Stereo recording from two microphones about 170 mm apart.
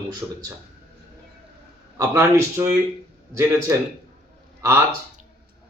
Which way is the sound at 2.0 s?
15° right (ahead or behind).